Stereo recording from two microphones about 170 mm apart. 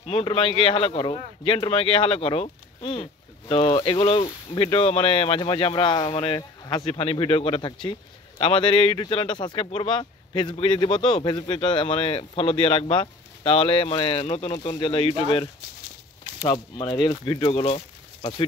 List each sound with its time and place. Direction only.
0.0 s speech: 35° left (ahead or behind)